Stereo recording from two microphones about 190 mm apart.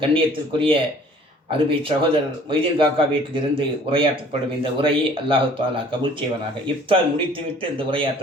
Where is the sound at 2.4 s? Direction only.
30° right (ahead or behind).